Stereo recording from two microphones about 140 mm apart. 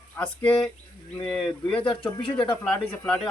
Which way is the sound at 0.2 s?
15° left (ahead or behind).